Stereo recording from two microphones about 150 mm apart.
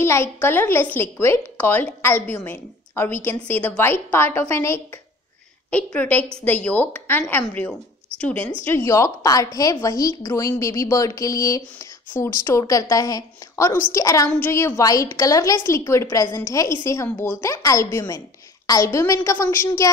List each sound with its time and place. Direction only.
0.0 s a woman's voice: 15° left (ahead or behind)